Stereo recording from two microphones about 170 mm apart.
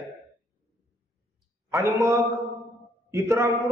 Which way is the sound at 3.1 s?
15° right (ahead or behind).